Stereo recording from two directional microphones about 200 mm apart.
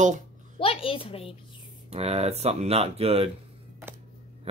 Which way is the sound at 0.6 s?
30° left (ahead or behind).